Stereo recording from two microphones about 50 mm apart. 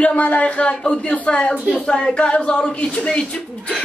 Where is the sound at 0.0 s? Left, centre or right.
Left.